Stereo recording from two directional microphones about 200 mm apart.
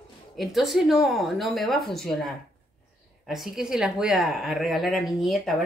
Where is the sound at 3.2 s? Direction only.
Centre (ahead or behind).